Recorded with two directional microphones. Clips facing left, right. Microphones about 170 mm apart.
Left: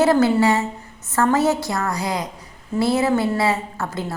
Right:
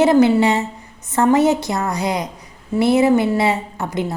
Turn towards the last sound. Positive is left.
turn(degrees=-20)  # may be behind; listen again after turning